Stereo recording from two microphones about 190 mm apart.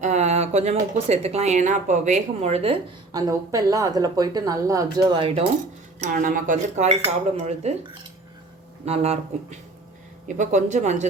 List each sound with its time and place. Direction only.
0.0 s speech: 35° right (ahead or behind)
3.1 s speech: 20° right (ahead or behind)
6.0 s speech: 45° right (ahead or behind)
8.8 s speech: 35° right (ahead or behind)